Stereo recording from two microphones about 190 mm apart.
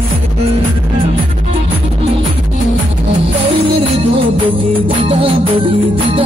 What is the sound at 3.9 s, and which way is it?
Music, 30° right (ahead or behind).